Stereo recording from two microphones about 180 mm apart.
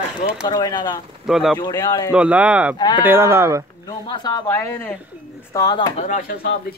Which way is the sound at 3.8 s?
25° left (ahead or behind).